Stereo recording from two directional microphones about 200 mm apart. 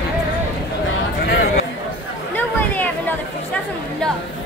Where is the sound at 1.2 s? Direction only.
50° left (ahead or behind).